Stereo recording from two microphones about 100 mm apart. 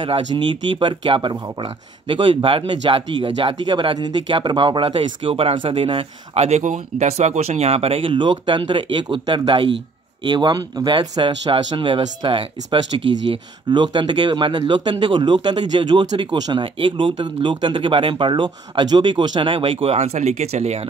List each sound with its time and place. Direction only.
0.0 s speech: 55° right (ahead or behind); by 20.2 s 90° right